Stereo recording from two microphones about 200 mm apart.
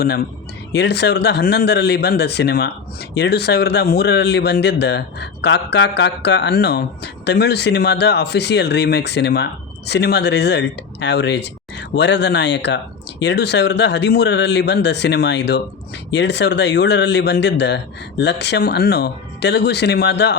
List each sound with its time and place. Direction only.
0.7 s speech: 55° left (ahead or behind)